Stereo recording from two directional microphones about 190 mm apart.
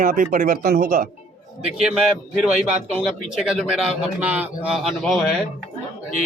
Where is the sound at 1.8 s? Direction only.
5° right (ahead or behind).